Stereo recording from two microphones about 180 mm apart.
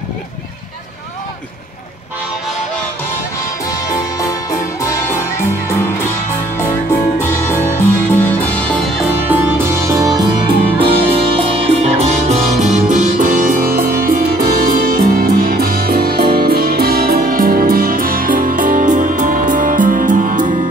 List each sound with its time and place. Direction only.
4.2 s music: 20° left (ahead or behind)
6.9 s music: 10° left (ahead or behind)
9.3 s music: 15° right (ahead or behind); by 20.5 s 45° right (ahead or behind)